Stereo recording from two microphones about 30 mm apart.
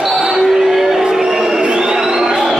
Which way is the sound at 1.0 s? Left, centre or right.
Centre.